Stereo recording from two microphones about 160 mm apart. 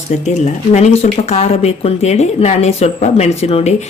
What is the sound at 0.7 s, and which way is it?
Speech, 45° left (ahead or behind).